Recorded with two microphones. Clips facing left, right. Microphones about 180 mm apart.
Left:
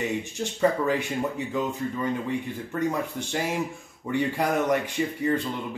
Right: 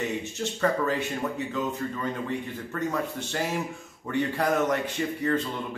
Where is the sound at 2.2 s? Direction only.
15° left (ahead or behind).